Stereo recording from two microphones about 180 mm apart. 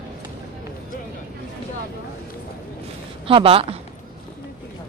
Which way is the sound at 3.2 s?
30° right (ahead or behind).